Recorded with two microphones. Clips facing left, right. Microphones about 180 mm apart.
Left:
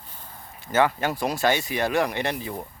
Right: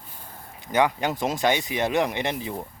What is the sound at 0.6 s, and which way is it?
Speech, 15° right (ahead or behind).